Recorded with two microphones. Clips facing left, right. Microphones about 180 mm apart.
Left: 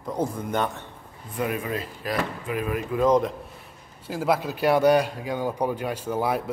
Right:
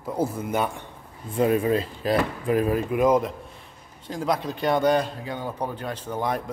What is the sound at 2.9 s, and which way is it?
Speech, 10° right (ahead or behind).